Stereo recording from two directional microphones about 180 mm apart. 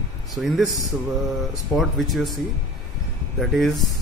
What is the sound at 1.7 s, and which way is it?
Speech, centre (ahead or behind).